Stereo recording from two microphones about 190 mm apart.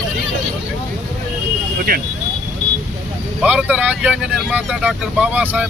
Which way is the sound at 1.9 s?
50° right (ahead or behind).